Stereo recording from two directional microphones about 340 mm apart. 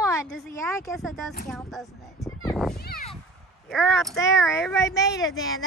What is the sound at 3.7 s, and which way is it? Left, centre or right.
Speech, centre.